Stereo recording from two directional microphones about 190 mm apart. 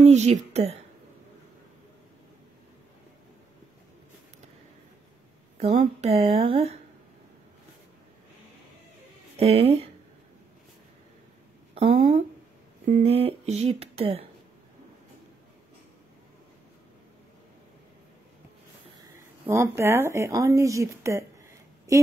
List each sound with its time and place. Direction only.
0.0 s speech: 35° right (ahead or behind)
5.6 s speech: 35° right (ahead or behind)
9.4 s speech: 35° right (ahead or behind)
11.7 s speech: 30° right (ahead or behind)
19.5 s speech: 15° right (ahead or behind)